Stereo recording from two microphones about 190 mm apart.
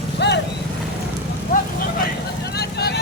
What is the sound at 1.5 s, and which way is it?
Vehicle, 45° left (ahead or behind).